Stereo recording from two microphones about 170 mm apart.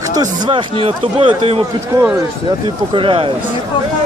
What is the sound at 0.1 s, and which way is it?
Speech, 25° right (ahead or behind).